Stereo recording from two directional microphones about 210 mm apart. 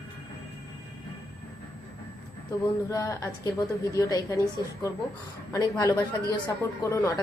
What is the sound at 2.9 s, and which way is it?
A woman's voice, 15° left (ahead or behind).